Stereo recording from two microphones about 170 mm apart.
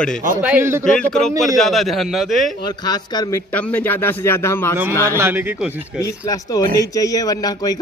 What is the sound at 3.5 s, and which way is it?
A man's voice, 10° left (ahead or behind).